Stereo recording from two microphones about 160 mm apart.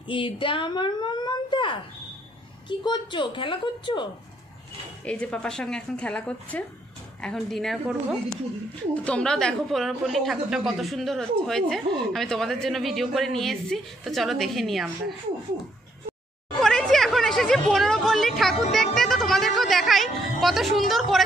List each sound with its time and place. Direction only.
0.1 s a woman's voice: 30° left (ahead or behind)
5.0 s a woman's voice: 5° left (ahead or behind)
16.5 s a sound: 5° left (ahead or behind)